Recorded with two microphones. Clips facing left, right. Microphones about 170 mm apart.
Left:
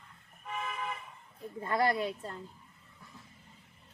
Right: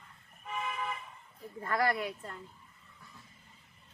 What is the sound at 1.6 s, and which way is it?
Speech, 25° left (ahead or behind).